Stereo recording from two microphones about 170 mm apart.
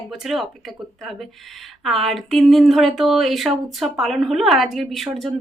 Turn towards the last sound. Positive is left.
turn(degrees=0)  # may be behind; listen again after turning